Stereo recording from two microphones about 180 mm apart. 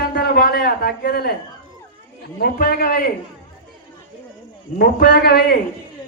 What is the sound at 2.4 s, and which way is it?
Speech, 55° left (ahead or behind).